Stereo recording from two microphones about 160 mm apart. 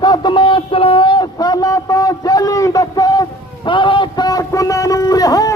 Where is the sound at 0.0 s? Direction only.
25° left (ahead or behind).